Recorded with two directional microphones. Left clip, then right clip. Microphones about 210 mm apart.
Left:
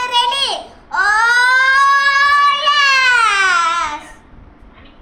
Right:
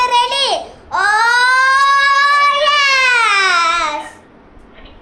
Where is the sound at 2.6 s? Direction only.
10° left (ahead or behind).